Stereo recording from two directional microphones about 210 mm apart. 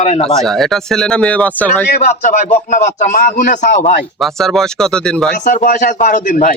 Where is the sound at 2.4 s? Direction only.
35° left (ahead or behind).